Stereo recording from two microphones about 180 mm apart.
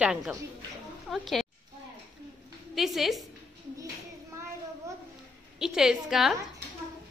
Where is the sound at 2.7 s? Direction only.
Centre (ahead or behind).